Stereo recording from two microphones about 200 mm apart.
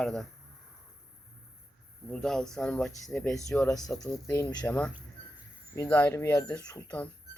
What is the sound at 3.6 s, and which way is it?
Speech, 20° left (ahead or behind).